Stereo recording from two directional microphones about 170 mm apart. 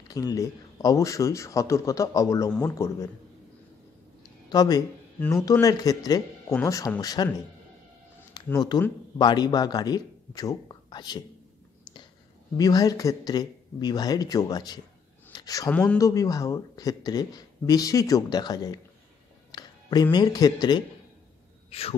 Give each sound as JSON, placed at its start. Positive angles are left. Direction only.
{"t": 0.1, "sound": "speech", "side_deg": 20}
{"t": 4.5, "sound": "speech", "side_deg": 20}
{"t": 8.5, "sound": "a man's voice", "side_deg": 25}
{"t": 12.5, "sound": "speech", "side_deg": 20}
{"t": 15.3, "sound": "a sound", "side_deg": 20}
{"t": 15.7, "sound": "speech", "side_deg": 5}
{"t": 16.0, "sound": "speech", "side_deg": 20}
{"t": 21.6, "sound": "speech", "side_deg": 35}